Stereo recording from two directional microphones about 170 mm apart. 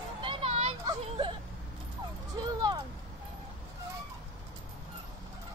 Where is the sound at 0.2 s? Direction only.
30° right (ahead or behind).